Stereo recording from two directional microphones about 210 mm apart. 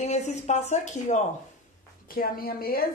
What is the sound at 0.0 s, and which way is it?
A woman's voice, 30° left (ahead or behind).